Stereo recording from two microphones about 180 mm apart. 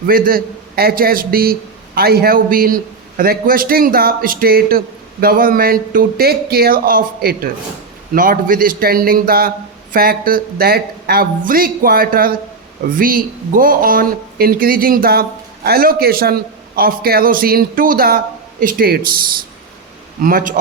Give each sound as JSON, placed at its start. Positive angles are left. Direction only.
{"t": 0.1, "sound": "a man's voice", "side_deg": -55}
{"t": 20.2, "sound": "a man's voice", "side_deg": -50}